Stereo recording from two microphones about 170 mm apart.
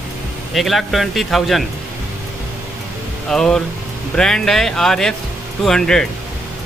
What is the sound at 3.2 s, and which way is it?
Speech, 5° left (ahead or behind).